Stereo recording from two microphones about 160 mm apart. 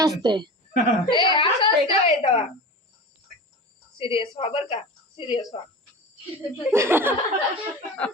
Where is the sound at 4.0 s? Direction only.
35° left (ahead or behind).